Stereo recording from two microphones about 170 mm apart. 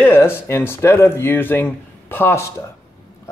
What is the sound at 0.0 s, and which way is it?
Speech, 15° left (ahead or behind).